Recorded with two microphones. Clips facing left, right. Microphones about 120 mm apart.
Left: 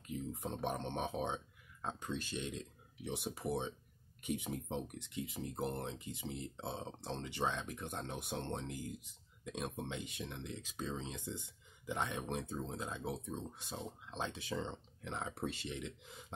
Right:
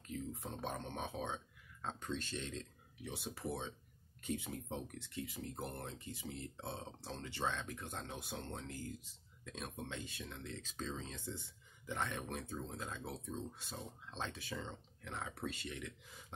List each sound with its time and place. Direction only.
0.0 s speech: 15° left (ahead or behind)